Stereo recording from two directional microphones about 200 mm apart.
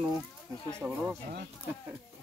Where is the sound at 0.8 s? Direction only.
10° right (ahead or behind).